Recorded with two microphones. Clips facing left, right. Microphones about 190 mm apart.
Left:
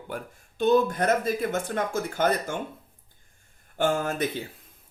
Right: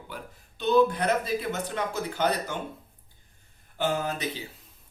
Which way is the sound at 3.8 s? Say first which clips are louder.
Left 3 dB; 50° left (ahead or behind).